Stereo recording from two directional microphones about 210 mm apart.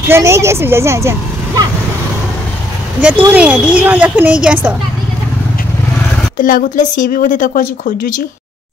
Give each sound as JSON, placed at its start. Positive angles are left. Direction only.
{"t": 0.1, "sound": "speech", "side_deg": -15}
{"t": 3.0, "sound": "speech", "side_deg": -10}
{"t": 6.4, "sound": "a woman's voice", "side_deg": 40}